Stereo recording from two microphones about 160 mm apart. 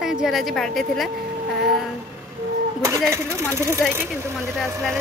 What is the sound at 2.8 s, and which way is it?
Speech, 15° right (ahead or behind).